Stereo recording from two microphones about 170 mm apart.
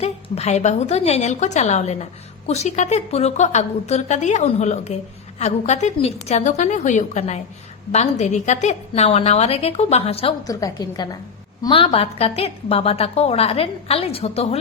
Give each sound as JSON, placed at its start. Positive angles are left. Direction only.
{"t": 0.0, "sound": "a woman's voice", "side_deg": 40}
{"t": 10.4, "sound": "a woman's voice", "side_deg": 20}